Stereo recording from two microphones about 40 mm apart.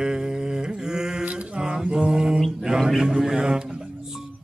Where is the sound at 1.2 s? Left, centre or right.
Right.